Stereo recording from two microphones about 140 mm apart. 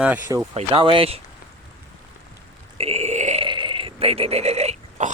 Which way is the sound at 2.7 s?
45° right (ahead or behind).